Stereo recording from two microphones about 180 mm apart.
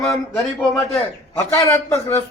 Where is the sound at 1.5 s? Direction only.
15° left (ahead or behind).